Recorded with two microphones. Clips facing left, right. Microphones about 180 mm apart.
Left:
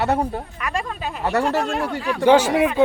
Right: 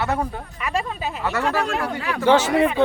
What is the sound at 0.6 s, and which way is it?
Speech, 5° right (ahead or behind).